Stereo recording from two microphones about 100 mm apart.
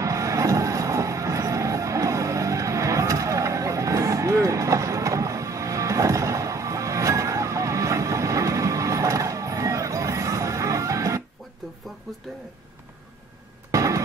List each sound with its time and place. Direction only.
0.0 s music: 30° right (ahead or behind)
13.7 s music: 35° right (ahead or behind)